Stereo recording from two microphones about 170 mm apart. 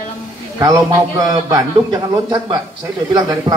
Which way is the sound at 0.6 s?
20° right (ahead or behind).